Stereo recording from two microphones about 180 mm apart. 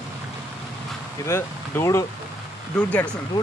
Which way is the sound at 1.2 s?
15° left (ahead or behind).